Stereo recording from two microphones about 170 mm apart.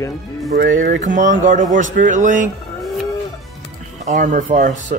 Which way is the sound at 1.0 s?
45° right (ahead or behind).